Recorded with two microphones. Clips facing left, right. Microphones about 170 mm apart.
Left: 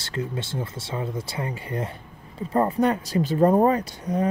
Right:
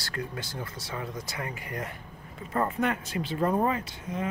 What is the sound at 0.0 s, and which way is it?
Speech, 25° left (ahead or behind).